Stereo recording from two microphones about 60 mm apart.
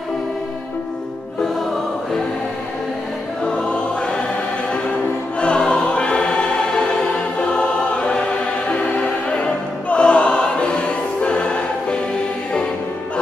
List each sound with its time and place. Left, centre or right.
3.4 s choir: centre
5.4 s choir: centre
8.6 s music: left